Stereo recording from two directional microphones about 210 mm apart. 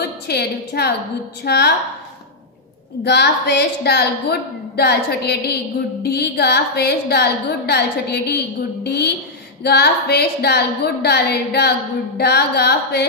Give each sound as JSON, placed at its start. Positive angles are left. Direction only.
{"t": 0.0, "sound": "a woman's voice", "side_deg": 50}
{"t": 3.0, "sound": "a woman's voice", "side_deg": 55}